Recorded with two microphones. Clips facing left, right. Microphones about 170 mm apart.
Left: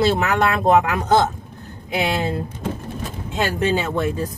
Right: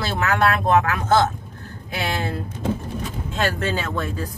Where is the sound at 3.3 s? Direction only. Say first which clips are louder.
Left 4 dB; 20° left (ahead or behind).